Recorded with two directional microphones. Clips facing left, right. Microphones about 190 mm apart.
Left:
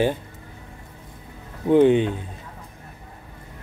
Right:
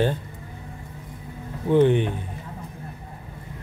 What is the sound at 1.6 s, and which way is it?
Speech, 15° left (ahead or behind).